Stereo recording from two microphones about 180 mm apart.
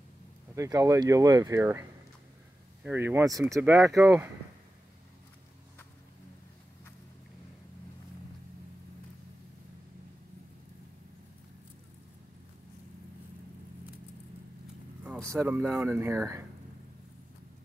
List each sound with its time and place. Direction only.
0.6 s speech: 20° right (ahead or behind)
15.1 s a sound: 5° left (ahead or behind)
15.4 s speech: 10° right (ahead or behind)